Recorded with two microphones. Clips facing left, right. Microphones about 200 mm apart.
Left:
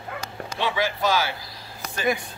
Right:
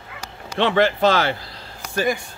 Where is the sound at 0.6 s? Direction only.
65° right (ahead or behind).